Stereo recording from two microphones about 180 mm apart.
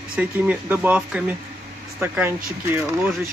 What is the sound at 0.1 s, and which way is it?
Speech, 10° right (ahead or behind).